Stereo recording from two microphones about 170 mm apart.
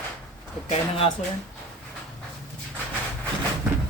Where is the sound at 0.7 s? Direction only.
35° left (ahead or behind).